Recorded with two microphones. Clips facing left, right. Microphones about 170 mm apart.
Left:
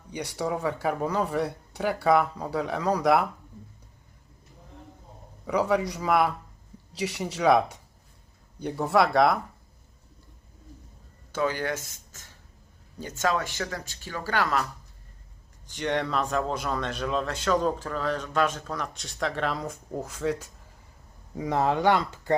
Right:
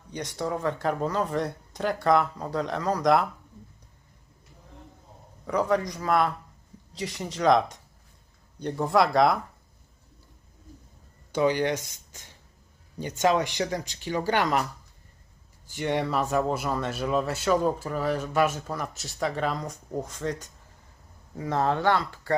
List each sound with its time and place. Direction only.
0.1 s speech: 10° left (ahead or behind)
5.5 s speech: 10° left (ahead or behind)
11.3 s speech: 15° right (ahead or behind)
13.0 s speech: 20° right (ahead or behind)
15.6 s speech: 10° right (ahead or behind); by 22.4 s 20° left (ahead or behind)